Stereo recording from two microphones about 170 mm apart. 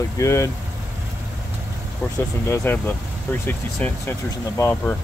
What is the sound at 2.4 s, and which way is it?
Speech, 15° left (ahead or behind).